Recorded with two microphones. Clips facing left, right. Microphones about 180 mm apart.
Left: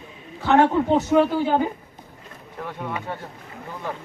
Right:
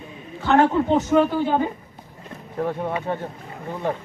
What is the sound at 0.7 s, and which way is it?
Speech, 10° left (ahead or behind).